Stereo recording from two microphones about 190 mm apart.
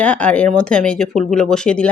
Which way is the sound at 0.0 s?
5° left (ahead or behind).